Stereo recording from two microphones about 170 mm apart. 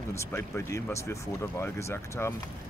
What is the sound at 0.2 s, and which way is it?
Speech, 15° left (ahead or behind).